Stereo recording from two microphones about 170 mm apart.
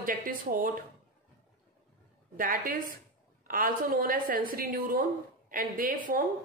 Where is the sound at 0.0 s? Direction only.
55° right (ahead or behind).